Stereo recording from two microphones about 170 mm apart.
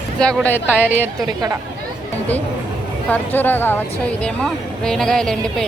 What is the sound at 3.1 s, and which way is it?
A woman's voice, 10° left (ahead or behind).